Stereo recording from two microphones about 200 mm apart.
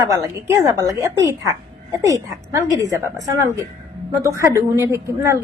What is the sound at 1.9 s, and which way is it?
A man's voice, 15° right (ahead or behind).